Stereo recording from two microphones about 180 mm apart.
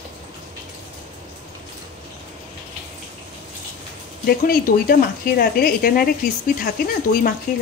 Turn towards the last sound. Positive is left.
turn(degrees=50)  # may be behind; listen again after turning